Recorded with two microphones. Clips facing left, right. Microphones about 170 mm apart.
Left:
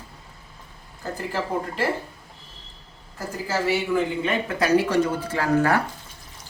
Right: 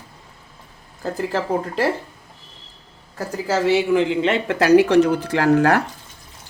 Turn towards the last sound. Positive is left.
turn(degrees=-80)